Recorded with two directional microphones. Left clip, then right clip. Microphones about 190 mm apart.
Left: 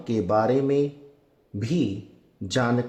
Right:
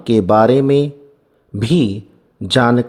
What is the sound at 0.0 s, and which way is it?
A man's voice, 45° right (ahead or behind).